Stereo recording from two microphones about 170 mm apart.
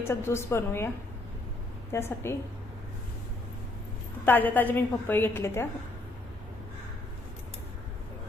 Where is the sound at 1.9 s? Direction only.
15° left (ahead or behind).